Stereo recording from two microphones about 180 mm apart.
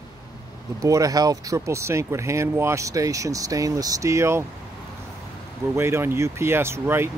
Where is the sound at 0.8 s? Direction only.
20° right (ahead or behind).